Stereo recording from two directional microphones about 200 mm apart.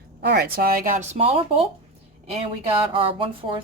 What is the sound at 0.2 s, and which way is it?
Speech, 55° right (ahead or behind).